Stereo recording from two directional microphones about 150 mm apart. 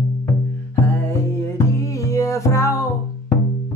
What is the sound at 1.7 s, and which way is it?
Music, 20° left (ahead or behind).